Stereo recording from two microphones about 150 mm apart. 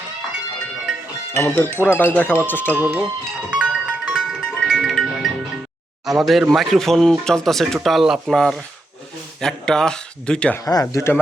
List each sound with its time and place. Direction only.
1.3 s speech: 15° left (ahead or behind)
2.7 s speech: 10° right (ahead or behind)
3.5 s music: 5° right (ahead or behind)
6.1 s speech: centre (ahead or behind)
10.7 s speech: 25° left (ahead or behind)